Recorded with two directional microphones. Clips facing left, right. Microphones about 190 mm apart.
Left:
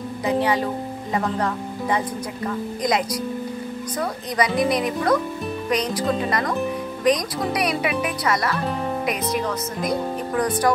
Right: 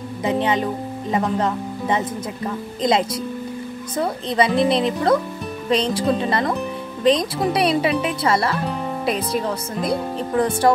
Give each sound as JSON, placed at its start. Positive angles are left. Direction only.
{"t": 0.2, "sound": "music", "side_deg": -20}
{"t": 1.1, "sound": "speech", "side_deg": -20}